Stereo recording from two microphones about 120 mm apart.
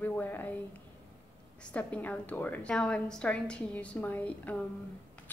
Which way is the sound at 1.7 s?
10° left (ahead or behind).